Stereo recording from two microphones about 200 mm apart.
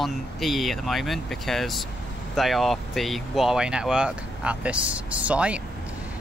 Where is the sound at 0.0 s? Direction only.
Centre (ahead or behind).